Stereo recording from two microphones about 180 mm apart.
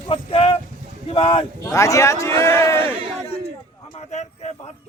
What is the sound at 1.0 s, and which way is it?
Speech, 30° left (ahead or behind).